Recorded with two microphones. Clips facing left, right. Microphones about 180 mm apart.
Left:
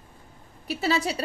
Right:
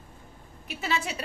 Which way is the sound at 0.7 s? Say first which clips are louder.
Left 6 dB; 35° left (ahead or behind).